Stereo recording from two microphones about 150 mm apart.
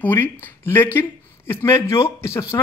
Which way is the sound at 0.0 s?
15° left (ahead or behind).